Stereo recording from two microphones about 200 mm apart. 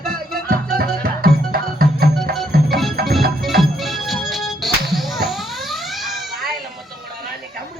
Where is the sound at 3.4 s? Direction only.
Centre (ahead or behind).